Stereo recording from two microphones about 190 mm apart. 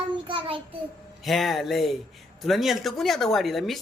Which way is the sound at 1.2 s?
Centre (ahead or behind).